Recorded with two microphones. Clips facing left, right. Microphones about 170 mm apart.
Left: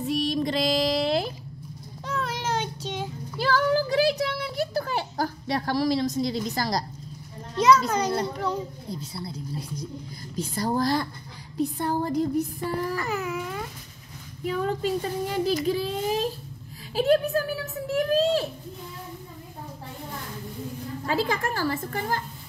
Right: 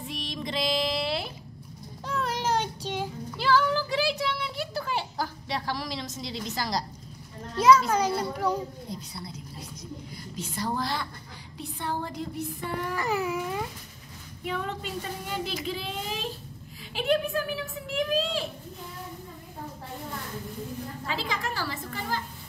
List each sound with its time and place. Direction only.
0.0 s female singing: 40° left (ahead or behind)
2.0 s child singing: 5° right (ahead or behind)
3.3 s a sound: 45° left (ahead or behind)
7.5 s a child's voice: 5° right (ahead or behind)
9.1 s speech: 30° left (ahead or behind)
14.4 s a woman's voice: 40° left (ahead or behind)
16.9 s a sound: 40° left (ahead or behind)
21.1 s a woman's voice: 50° left (ahead or behind)